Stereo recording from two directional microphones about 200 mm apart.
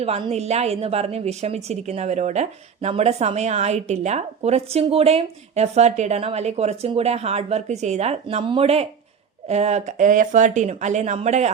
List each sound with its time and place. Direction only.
0.0 s a woman's voice: 30° right (ahead or behind)